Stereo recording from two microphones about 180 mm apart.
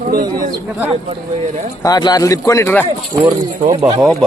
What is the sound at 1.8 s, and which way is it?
A man's voice, 20° left (ahead or behind).